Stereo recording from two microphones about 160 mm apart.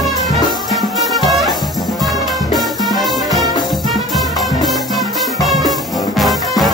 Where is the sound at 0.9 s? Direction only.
20° left (ahead or behind).